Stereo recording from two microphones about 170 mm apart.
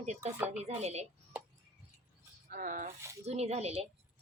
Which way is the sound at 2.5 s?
50° right (ahead or behind).